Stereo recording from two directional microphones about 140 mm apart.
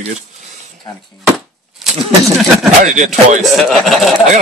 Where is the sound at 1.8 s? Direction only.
Centre (ahead or behind).